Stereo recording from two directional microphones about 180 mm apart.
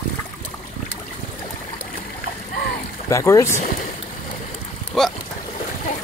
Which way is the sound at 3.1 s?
15° left (ahead or behind).